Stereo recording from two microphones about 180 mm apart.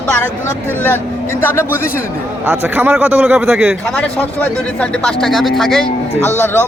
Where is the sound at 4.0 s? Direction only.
5° left (ahead or behind).